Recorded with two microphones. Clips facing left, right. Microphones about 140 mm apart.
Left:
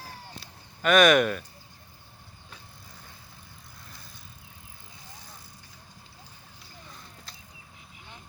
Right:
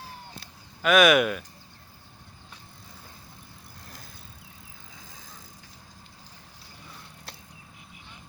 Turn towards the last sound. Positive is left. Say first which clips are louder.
# right 4 dB
turn(degrees=-65)  # may be behind; listen again after turning